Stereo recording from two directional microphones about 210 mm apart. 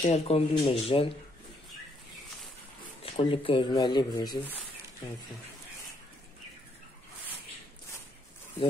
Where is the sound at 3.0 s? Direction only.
25° left (ahead or behind).